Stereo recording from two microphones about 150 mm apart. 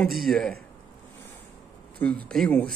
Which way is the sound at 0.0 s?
Centre (ahead or behind).